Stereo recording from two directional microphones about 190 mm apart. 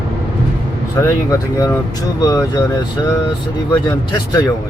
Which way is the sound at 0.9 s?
20° left (ahead or behind).